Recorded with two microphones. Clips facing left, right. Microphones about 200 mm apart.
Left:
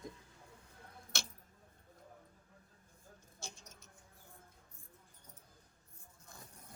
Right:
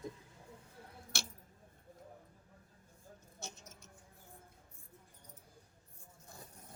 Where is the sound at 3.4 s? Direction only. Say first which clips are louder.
Right 2 dB; 20° right (ahead or behind).